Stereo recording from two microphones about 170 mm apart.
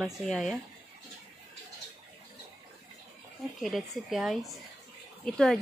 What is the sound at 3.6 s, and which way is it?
Speech, centre (ahead or behind).